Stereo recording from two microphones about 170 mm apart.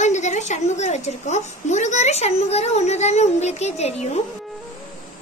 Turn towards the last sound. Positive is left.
turn(degrees=40)  # may be behind; listen again after turning